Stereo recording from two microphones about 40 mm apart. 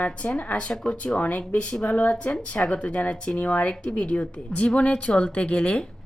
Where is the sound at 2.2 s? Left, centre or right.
Left.